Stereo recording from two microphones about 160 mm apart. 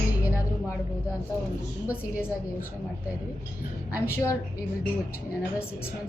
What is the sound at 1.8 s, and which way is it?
Speech, 10° right (ahead or behind).